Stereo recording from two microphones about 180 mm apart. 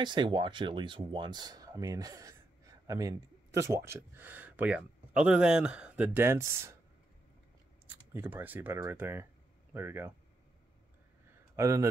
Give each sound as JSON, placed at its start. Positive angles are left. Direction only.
{"t": 0.0, "sound": "speech", "side_deg": -25}
{"t": 7.8, "sound": "speech", "side_deg": -10}
{"t": 11.5, "sound": "speech", "side_deg": -15}